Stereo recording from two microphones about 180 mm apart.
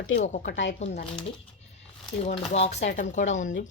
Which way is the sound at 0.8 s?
35° left (ahead or behind).